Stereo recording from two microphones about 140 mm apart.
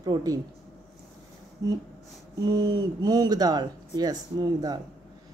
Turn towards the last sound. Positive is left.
turn(degrees=-25)  # may be behind; listen again after turning